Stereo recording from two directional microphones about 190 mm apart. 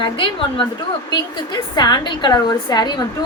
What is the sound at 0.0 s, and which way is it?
A woman's voice, 25° left (ahead or behind).